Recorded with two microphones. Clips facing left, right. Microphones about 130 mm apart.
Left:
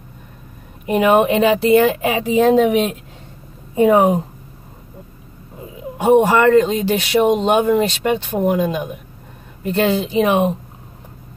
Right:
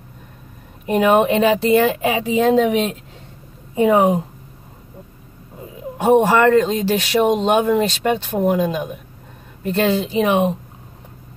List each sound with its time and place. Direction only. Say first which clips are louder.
0.8 s speech: left 1 dB; 5° left (ahead or behind)
3.8 s speech: left 2 dB; 30° left (ahead or behind)
5.9 s speech: left 1 dB; centre (ahead or behind)